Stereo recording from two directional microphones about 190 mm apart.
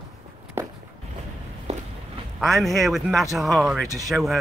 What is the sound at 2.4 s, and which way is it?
Speech, centre (ahead or behind).